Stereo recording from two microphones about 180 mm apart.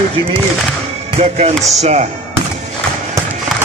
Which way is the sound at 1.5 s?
Centre (ahead or behind).